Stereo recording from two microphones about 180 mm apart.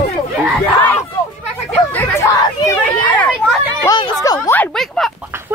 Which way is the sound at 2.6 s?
15° left (ahead or behind).